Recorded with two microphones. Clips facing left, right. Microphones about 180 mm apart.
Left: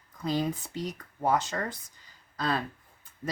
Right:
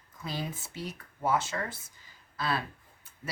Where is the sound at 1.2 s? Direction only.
40° left (ahead or behind).